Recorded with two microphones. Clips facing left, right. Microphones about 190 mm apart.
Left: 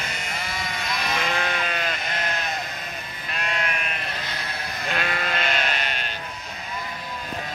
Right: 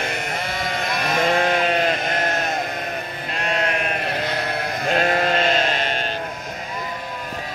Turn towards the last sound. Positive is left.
turn(degrees=-35)  # may be behind; listen again after turning